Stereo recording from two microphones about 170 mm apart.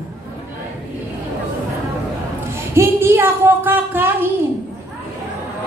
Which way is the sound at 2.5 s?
15° right (ahead or behind).